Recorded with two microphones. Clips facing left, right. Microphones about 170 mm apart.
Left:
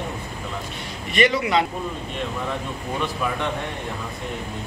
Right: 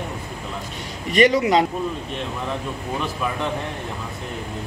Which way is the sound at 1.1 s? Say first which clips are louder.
Right 4 dB; 40° right (ahead or behind).